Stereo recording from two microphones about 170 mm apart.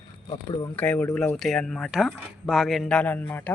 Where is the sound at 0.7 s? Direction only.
10° left (ahead or behind).